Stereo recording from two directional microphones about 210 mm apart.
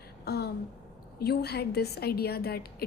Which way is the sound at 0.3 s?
50° left (ahead or behind).